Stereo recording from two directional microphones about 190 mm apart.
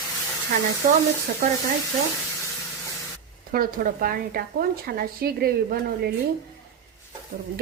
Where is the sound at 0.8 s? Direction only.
45° right (ahead or behind).